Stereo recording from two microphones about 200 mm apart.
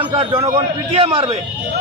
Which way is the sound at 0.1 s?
25° right (ahead or behind).